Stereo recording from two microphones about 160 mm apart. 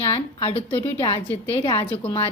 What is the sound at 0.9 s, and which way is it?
A woman's voice, 35° left (ahead or behind).